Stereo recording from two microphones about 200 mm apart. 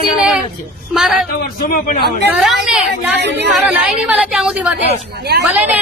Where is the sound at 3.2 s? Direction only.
55° right (ahead or behind).